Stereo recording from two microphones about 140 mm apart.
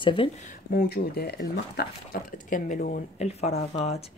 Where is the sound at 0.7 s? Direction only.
90° left.